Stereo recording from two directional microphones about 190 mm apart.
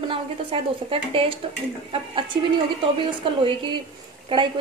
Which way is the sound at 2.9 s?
25° right (ahead or behind).